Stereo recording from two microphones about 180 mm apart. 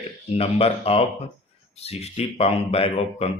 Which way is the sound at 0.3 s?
35° left (ahead or behind).